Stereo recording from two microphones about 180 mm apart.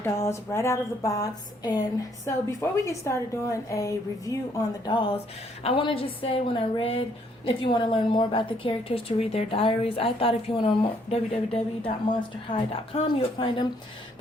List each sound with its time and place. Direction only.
0.0 s a woman's voice: 15° left (ahead or behind)